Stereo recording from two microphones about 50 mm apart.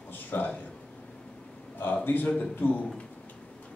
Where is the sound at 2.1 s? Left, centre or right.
Left.